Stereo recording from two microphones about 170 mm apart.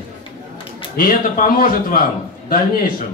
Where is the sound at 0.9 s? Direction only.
55° left (ahead or behind).